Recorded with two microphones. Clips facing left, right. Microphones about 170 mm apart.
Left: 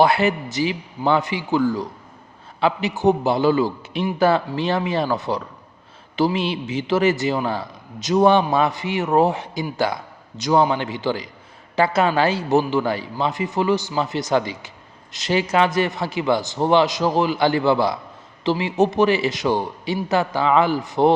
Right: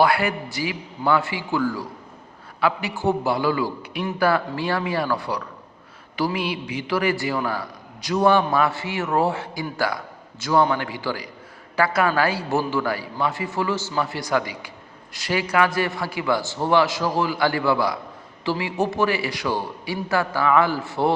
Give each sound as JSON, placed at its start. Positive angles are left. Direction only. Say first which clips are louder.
{"t": 0.0, "sound": "a man's voice", "louder": "left 3 dB", "side_deg": 20}